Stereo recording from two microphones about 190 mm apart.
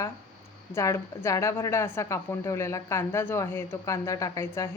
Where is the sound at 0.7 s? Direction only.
15° left (ahead or behind).